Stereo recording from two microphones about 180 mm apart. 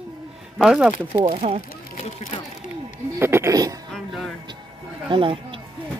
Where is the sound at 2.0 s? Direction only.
40° left (ahead or behind).